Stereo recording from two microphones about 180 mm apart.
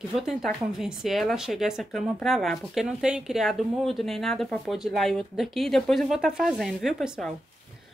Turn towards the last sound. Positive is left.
turn(degrees=0)  # may be behind; listen again after turning